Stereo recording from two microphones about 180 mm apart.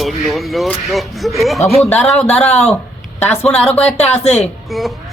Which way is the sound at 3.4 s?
5° left (ahead or behind).